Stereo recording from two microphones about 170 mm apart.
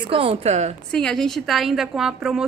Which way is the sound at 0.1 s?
35° right (ahead or behind).